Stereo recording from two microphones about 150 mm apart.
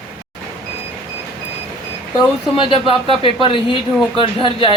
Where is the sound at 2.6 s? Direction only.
35° left (ahead or behind).